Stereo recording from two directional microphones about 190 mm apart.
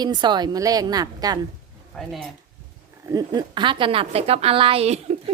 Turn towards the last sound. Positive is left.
turn(degrees=-30)  # may be behind; listen again after turning